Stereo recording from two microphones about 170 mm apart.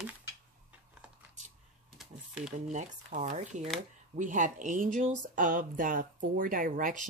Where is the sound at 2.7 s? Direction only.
45° right (ahead or behind).